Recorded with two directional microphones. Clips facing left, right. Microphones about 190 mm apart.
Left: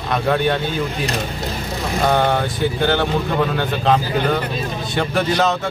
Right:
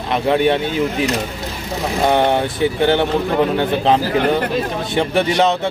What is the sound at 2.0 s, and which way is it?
Speech, 25° right (ahead or behind).